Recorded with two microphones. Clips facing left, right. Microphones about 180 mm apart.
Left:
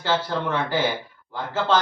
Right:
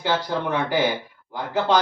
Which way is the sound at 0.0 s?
15° right (ahead or behind).